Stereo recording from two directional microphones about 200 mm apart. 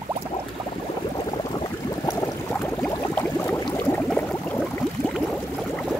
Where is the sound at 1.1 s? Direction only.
20° left (ahead or behind).